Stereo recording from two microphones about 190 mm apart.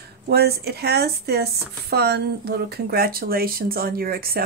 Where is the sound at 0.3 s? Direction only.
55° right (ahead or behind).